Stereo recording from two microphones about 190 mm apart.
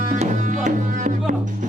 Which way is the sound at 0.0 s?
40° right (ahead or behind).